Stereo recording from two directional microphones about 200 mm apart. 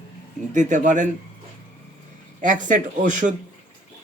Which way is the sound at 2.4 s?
40° right (ahead or behind).